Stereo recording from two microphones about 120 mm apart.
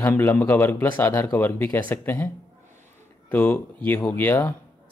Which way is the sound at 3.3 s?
15° left (ahead or behind).